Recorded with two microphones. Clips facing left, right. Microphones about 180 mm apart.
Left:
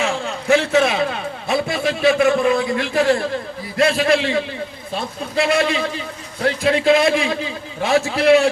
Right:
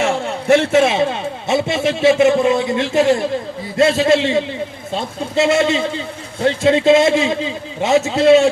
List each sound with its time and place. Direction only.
0.7 s a man's voice: 25° right (ahead or behind)